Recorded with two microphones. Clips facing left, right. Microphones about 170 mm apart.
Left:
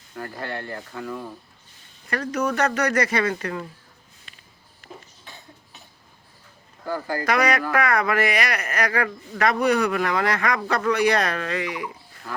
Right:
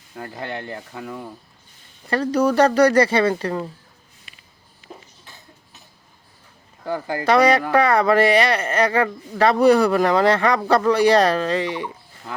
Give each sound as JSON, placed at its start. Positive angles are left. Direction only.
{"t": 0.2, "sound": "speech", "side_deg": -20}
{"t": 2.0, "sound": "speech", "side_deg": -30}
{"t": 6.8, "sound": "speech", "side_deg": -20}